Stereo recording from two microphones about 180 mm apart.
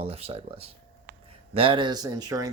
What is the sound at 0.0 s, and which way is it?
Speech, 35° right (ahead or behind).